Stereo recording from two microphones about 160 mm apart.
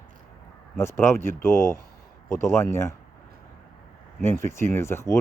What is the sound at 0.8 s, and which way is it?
Speech, 15° left (ahead or behind).